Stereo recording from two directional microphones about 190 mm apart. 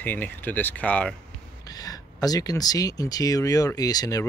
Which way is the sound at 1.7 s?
20° left (ahead or behind).